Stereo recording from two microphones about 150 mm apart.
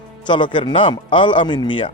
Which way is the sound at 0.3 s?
30° left (ahead or behind).